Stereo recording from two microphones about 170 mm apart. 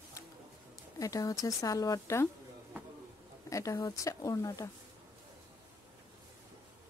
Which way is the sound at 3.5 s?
20° left (ahead or behind).